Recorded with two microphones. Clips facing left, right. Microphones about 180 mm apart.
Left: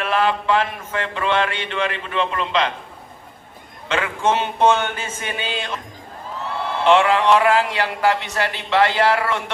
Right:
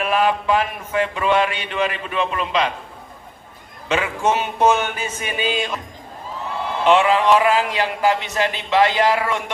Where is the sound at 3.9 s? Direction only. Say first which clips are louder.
Right 1 dB; 10° right (ahead or behind).